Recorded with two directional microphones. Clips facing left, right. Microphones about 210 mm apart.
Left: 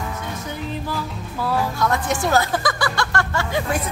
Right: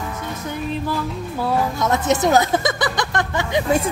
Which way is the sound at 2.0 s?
20° right (ahead or behind).